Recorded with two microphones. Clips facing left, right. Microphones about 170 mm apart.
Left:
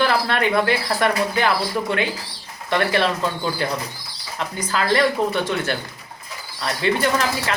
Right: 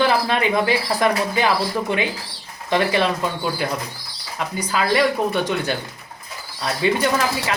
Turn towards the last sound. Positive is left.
turn(degrees=-10)  # may be behind; listen again after turning